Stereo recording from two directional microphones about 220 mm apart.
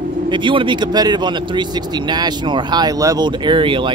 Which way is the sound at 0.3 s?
20° right (ahead or behind).